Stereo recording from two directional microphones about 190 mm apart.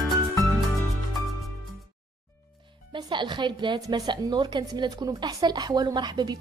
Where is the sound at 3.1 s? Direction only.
25° right (ahead or behind).